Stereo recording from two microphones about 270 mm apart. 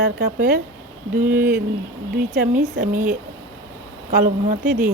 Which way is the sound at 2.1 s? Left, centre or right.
Right.